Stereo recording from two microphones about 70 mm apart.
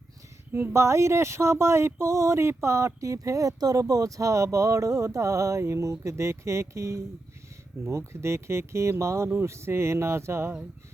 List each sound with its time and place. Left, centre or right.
0.5 s speech: right